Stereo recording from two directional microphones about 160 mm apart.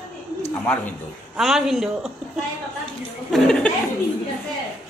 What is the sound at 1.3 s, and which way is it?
Speech, centre (ahead or behind).